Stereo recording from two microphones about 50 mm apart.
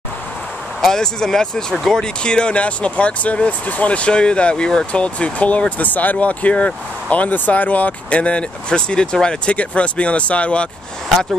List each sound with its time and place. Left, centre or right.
0.7 s speech: centre